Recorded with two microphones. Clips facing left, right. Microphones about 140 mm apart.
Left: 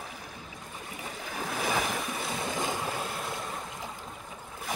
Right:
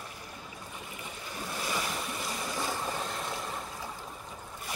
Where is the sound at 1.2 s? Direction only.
90° left.